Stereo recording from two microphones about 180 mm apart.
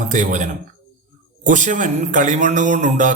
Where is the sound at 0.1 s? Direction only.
45° right (ahead or behind).